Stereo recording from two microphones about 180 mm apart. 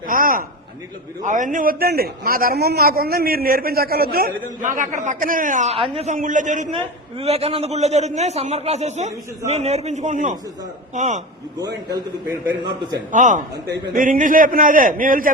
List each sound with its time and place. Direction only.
0.1 s a sound: 50° right (ahead or behind)
1.2 s a man's voice: 45° right (ahead or behind)
11.9 s a man's voice: 25° right (ahead or behind)
13.1 s a man's voice: 45° right (ahead or behind)